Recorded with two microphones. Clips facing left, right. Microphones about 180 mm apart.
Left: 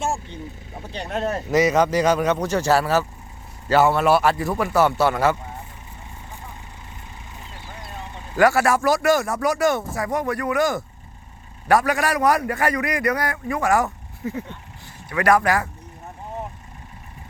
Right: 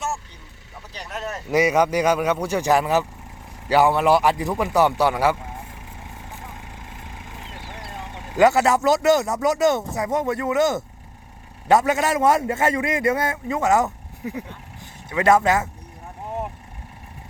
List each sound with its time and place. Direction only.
0.8 s speech: 30° left (ahead or behind)
1.5 s a man's voice: 10° right (ahead or behind)
8.4 s a man's voice: 20° right (ahead or behind)